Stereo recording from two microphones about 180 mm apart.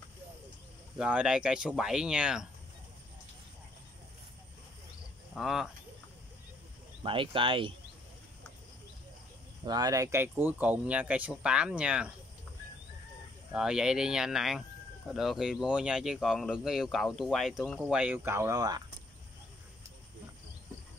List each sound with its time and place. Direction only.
0.9 s speech: 5° right (ahead or behind)
5.3 s speech: centre (ahead or behind)
7.0 s speech: 30° right (ahead or behind)
9.7 s speech: 20° right (ahead or behind); by 12.1 s 5° right (ahead or behind)
13.5 s speech: 5° right (ahead or behind); by 18.8 s 20° right (ahead or behind)